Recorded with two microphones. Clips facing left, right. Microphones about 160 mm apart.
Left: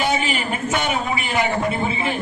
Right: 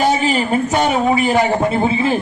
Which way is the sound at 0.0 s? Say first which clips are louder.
Right 6 dB; 40° right (ahead or behind).